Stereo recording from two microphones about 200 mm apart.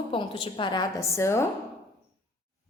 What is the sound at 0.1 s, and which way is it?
A woman's voice, 25° left (ahead or behind).